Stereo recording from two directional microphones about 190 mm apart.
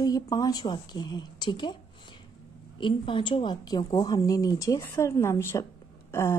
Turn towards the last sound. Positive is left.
turn(degrees=15)  # may be behind; listen again after turning